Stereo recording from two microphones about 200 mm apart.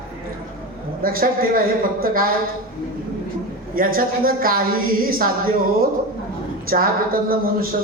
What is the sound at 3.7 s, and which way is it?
Speech, 45° right (ahead or behind).